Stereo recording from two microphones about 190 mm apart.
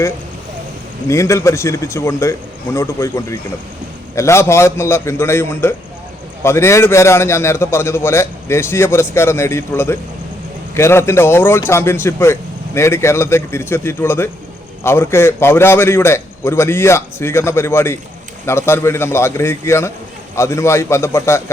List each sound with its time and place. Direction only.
1.0 s a man's voice: 15° left (ahead or behind)